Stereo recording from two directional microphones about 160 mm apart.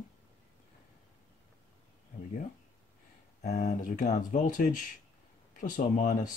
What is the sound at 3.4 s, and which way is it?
Speech, 50° left (ahead or behind).